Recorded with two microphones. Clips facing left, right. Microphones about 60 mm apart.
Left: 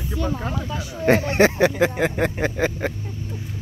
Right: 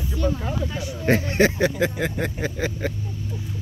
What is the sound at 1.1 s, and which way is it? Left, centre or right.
Speech, left.